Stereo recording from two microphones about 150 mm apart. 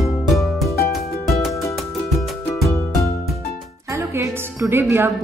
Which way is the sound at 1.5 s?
20° left (ahead or behind).